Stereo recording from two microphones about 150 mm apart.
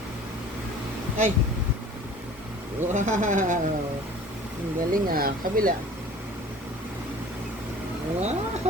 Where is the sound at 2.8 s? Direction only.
55° right (ahead or behind).